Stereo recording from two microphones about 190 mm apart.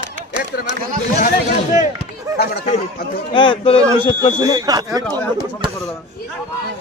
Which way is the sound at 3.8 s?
20° right (ahead or behind).